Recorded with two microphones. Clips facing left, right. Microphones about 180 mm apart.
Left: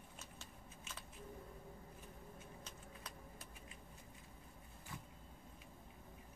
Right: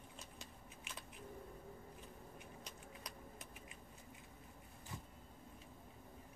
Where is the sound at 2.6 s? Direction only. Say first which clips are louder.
Right 1 dB; 15° right (ahead or behind).